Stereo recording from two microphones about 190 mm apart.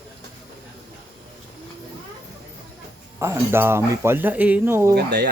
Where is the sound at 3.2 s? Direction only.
15° right (ahead or behind).